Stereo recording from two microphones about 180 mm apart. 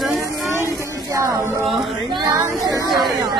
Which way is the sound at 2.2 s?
15° right (ahead or behind).